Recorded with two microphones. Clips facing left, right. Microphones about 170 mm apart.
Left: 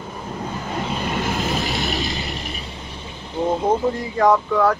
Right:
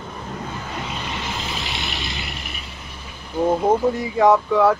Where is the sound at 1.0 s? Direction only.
50° left (ahead or behind).